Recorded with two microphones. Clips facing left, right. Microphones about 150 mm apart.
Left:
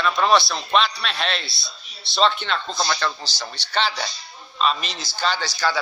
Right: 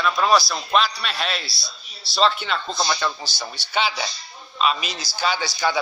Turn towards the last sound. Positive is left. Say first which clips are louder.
# right 1 dB
turn(degrees=-15)  # may be behind; listen again after turning